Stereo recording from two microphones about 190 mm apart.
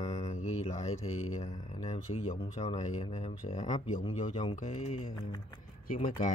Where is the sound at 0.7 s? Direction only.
35° left (ahead or behind).